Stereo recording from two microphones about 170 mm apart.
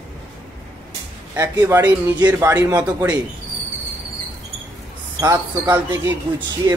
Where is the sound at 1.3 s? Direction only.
15° right (ahead or behind).